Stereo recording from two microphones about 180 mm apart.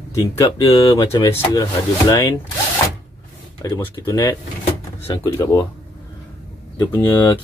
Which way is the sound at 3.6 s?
15° left (ahead or behind).